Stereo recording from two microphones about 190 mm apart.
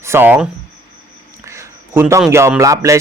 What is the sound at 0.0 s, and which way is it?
Speech, 10° right (ahead or behind).